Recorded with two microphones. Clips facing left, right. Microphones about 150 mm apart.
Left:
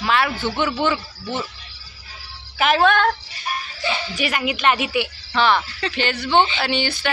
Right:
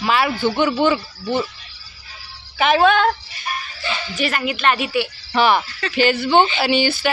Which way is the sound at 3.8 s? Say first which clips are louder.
Right 1 dB; 15° left (ahead or behind).